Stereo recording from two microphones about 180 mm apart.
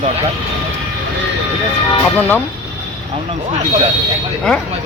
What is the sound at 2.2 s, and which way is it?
Speech, 10° left (ahead or behind).